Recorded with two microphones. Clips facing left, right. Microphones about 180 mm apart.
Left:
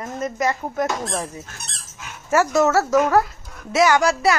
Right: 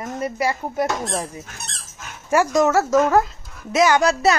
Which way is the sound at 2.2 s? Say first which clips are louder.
Even; 15° right (ahead or behind).